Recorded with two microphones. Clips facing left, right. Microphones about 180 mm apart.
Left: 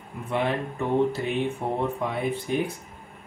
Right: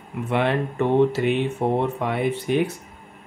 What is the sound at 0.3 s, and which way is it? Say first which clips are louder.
Speech: right 4 dB; 75° right (ahead or behind).